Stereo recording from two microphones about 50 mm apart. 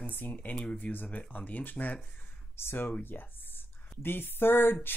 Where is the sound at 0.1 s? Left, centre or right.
Left.